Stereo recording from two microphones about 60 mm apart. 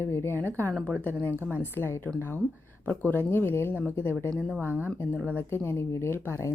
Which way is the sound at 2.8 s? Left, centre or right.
Left.